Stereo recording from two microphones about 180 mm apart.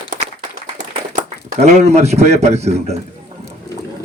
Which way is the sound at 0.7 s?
40° right (ahead or behind).